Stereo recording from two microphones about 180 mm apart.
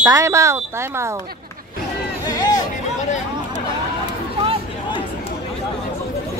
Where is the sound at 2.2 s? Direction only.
20° left (ahead or behind).